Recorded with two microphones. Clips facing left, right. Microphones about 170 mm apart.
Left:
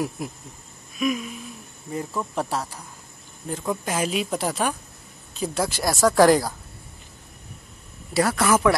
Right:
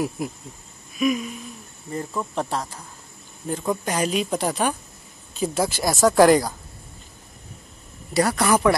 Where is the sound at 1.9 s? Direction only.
5° left (ahead or behind).